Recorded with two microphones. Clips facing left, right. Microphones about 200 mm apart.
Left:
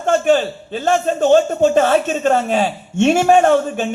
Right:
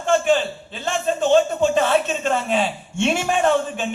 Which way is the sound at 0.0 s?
45° left (ahead or behind).